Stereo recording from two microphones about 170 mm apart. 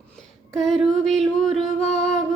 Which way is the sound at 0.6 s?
Centre (ahead or behind).